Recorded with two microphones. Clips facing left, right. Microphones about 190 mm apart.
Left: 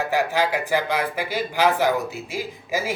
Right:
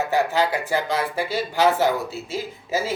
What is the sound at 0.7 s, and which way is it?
A woman's voice, 15° left (ahead or behind).